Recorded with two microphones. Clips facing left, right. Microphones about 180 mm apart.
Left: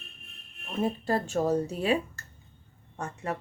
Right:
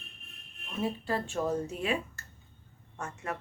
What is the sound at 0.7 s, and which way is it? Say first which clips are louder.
Speech: left 4 dB; 45° left (ahead or behind).